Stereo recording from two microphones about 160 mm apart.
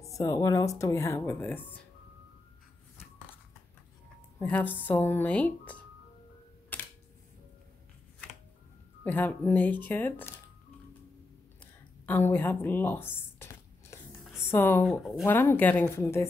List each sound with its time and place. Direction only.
0.0 s speech: 20° left (ahead or behind)
4.4 s speech: 10° left (ahead or behind)
6.7 s a sound: 10° left (ahead or behind)
9.0 s speech: 10° left (ahead or behind)
11.6 s a sound: 10° left (ahead or behind)
14.4 s speech: 15° left (ahead or behind)
14.9 s speech: centre (ahead or behind)
15.2 s speech: 15° left (ahead or behind)